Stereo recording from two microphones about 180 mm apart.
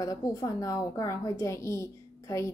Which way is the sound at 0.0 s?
20° left (ahead or behind).